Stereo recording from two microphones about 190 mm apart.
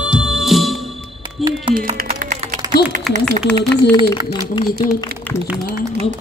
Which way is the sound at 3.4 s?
5° left (ahead or behind).